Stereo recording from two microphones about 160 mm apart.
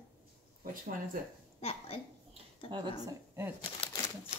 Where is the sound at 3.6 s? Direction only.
30° left (ahead or behind).